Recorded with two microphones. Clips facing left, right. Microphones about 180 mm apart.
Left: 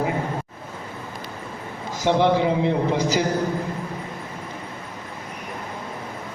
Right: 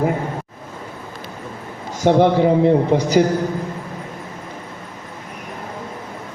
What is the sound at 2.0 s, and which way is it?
A man's voice, 45° right (ahead or behind).